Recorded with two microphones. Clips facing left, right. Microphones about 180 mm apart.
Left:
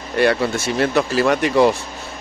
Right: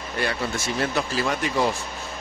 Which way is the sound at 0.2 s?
65° left (ahead or behind).